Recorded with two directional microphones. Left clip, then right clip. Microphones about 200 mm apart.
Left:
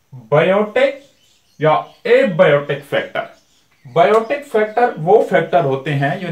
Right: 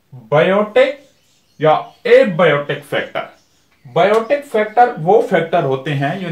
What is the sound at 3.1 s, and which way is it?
Speech, 15° left (ahead or behind).